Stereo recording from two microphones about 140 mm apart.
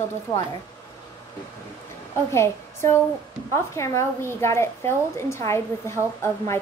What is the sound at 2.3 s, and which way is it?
A woman's voice, 20° left (ahead or behind).